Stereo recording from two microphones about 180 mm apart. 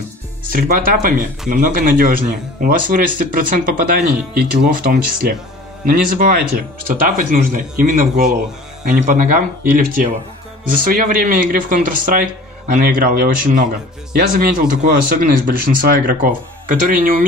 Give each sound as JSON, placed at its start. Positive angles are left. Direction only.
{"t": 0.5, "sound": "speech", "side_deg": -50}